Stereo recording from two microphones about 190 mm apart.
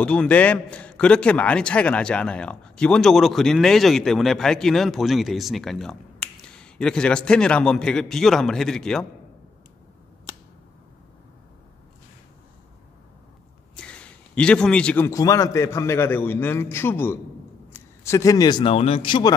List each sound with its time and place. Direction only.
0.0 s a man's voice: 5° left (ahead or behind)
13.7 s a man's voice: 5° left (ahead or behind); by 19.3 s 25° left (ahead or behind)